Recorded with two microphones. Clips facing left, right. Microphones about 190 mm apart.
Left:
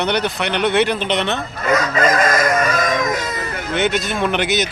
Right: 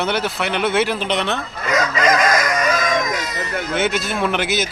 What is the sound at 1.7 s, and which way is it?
Fowl, 50° left (ahead or behind).